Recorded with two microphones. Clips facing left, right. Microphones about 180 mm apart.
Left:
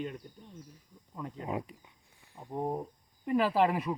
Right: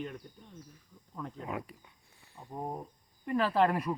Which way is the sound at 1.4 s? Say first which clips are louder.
Left 5 dB; 20° left (ahead or behind).